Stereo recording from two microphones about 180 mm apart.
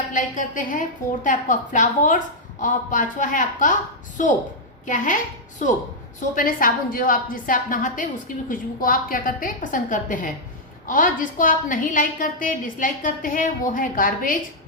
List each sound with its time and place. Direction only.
0.1 s a woman's voice: 45° left (ahead or behind)